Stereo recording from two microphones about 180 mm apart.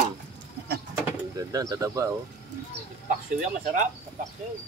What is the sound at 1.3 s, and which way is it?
Speech, 20° right (ahead or behind).